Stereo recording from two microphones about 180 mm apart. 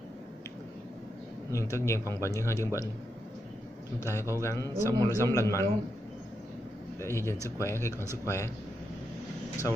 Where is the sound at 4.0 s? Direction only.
15° left (ahead or behind).